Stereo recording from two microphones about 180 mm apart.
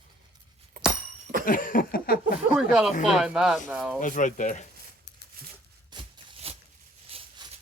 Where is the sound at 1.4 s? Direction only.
50° left (ahead or behind).